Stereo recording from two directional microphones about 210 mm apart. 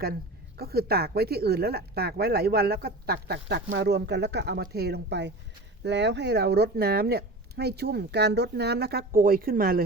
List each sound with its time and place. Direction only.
0.0 s speech: 50° right (ahead or behind)